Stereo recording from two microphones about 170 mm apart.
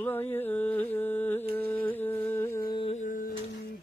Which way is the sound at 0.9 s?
10° left (ahead or behind).